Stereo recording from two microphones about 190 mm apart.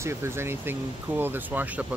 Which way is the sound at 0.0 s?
15° right (ahead or behind).